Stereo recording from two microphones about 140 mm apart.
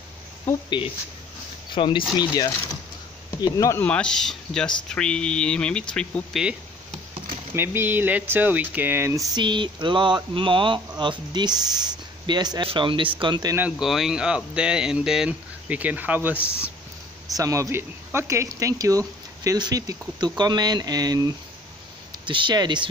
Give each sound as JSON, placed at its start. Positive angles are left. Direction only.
{"t": 0.7, "sound": "speech", "side_deg": 35}
{"t": 3.8, "sound": "speech", "side_deg": 5}
{"t": 7.5, "sound": "speech", "side_deg": -15}
{"t": 13.6, "sound": "speech", "side_deg": -5}
{"t": 16.3, "sound": "speech", "side_deg": 15}
{"t": 17.4, "sound": "speech", "side_deg": -20}